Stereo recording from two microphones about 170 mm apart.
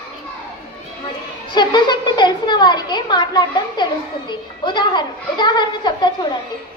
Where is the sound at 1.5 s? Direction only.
25° left (ahead or behind).